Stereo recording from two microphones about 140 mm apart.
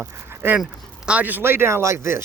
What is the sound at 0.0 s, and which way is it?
Speech, 15° right (ahead or behind).